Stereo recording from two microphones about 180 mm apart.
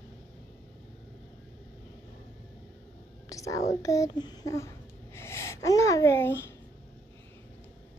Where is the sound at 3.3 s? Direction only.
20° left (ahead or behind).